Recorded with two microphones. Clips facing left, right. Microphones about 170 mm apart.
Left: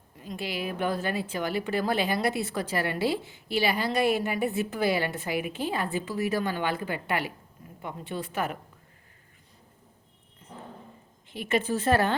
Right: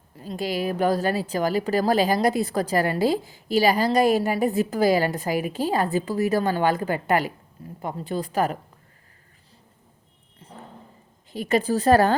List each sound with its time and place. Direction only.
0.2 s a woman's voice: 35° right (ahead or behind)
10.4 s music: 30° right (ahead or behind)
11.3 s a woman's voice: 40° right (ahead or behind)